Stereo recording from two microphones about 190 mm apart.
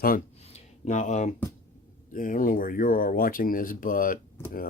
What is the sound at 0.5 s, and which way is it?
Speech, 40° left (ahead or behind).